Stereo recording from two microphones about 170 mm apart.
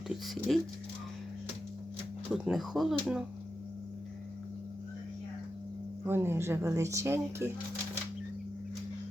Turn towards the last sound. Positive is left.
turn(degrees=-15)  # may be behind; listen again after turning